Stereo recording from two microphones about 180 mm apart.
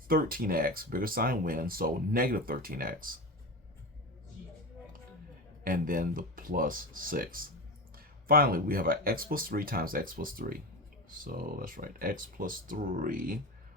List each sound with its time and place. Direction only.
0.1 s speech: 55° right (ahead or behind)
5.6 s speech: 50° right (ahead or behind)